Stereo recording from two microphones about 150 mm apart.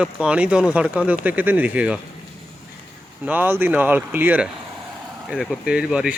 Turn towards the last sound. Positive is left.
turn(degrees=-5)  # may be behind; listen again after turning